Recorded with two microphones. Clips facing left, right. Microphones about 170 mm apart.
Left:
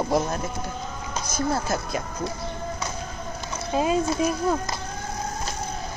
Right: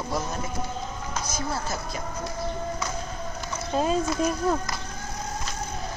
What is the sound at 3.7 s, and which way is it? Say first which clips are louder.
Speech: left 2 dB; 10° left (ahead or behind).